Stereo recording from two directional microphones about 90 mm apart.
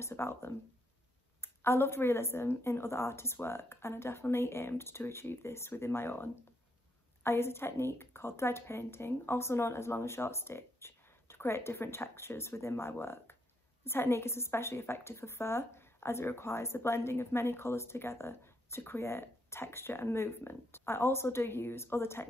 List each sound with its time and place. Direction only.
0.0 s a woman's voice: 30° left (ahead or behind)